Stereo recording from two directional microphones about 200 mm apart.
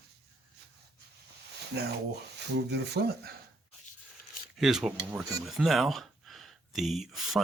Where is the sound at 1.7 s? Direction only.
55° right (ahead or behind).